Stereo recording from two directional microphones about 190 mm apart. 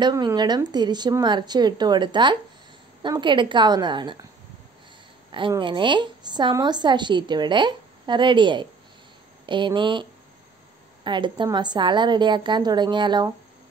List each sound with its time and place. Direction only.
0.0 s a woman's voice: 20° right (ahead or behind)
5.5 s a woman's voice: 25° right (ahead or behind)
11.1 s a woman's voice: 25° right (ahead or behind)